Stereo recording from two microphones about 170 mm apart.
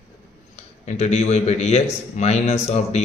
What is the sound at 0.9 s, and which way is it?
A man's voice, 40° left (ahead or behind).